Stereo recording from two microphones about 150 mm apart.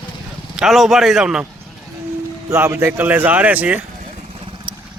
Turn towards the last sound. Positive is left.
turn(degrees=-10)  # may be behind; listen again after turning